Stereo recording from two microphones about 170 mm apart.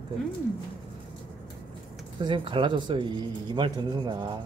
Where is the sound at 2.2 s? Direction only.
30° right (ahead or behind).